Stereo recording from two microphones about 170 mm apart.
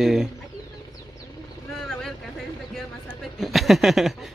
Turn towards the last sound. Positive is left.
turn(degrees=0)  # may be behind; listen again after turning